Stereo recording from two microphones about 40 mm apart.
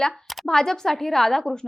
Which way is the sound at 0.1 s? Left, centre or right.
Centre.